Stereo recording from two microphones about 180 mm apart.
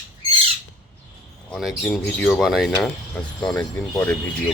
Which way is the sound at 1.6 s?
Centre (ahead or behind).